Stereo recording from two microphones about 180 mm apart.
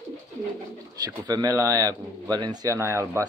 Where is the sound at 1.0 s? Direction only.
20° right (ahead or behind).